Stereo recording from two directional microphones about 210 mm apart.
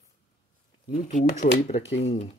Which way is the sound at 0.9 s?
35° left (ahead or behind).